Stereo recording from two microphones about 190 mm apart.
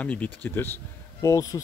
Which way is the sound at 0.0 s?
5° left (ahead or behind).